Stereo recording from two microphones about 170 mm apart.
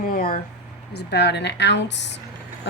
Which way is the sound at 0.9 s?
75° left (ahead or behind).